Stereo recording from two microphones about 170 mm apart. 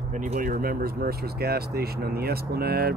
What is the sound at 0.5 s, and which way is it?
Speech, 60° right (ahead or behind).